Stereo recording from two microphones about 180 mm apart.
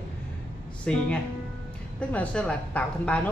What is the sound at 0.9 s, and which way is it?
A woman's voice, 5° left (ahead or behind).